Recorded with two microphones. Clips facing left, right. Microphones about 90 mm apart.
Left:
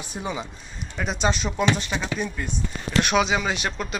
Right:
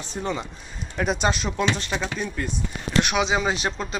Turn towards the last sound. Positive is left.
turn(degrees=-30)  # may be behind; listen again after turning